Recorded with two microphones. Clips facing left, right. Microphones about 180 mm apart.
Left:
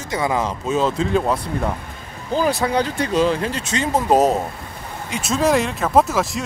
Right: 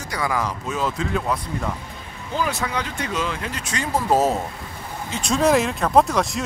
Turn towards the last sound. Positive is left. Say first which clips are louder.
# left 1 dB
turn(degrees=0)  # may be behind; listen again after turning